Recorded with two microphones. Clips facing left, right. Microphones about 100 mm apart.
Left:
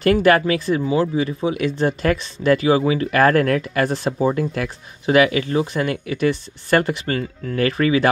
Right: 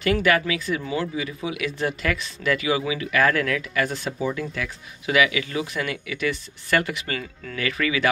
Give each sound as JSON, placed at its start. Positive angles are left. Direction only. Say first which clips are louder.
{"t": 0.0, "sound": "speech", "louder": "left 6 dB", "side_deg": 40}